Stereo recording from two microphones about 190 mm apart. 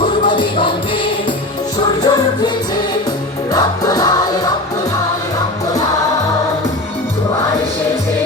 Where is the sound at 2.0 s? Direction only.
20° left (ahead or behind).